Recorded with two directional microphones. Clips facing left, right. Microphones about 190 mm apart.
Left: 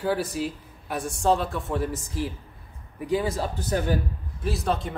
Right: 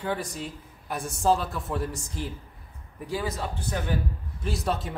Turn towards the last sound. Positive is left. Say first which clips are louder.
# left 2 dB
turn(degrees=0)  # may be behind; listen again after turning